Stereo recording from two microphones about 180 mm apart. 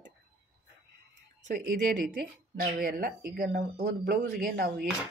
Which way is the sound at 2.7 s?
50° right (ahead or behind).